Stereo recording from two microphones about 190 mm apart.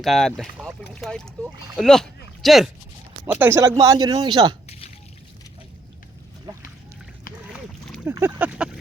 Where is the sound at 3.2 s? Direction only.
10° right (ahead or behind).